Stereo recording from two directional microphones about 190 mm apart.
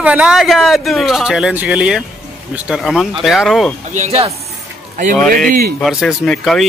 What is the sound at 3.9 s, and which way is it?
Speech, 35° right (ahead or behind).